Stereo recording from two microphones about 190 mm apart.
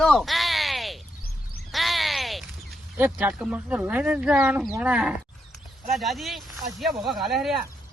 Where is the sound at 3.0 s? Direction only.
10° right (ahead or behind).